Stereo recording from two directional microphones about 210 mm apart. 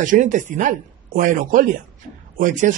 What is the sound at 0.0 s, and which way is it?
A man's voice, 35° right (ahead or behind).